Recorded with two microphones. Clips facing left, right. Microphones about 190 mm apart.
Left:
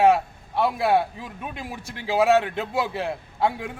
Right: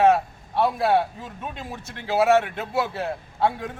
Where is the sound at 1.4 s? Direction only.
10° left (ahead or behind).